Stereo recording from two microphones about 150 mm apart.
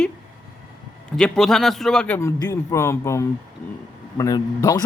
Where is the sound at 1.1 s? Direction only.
Centre (ahead or behind).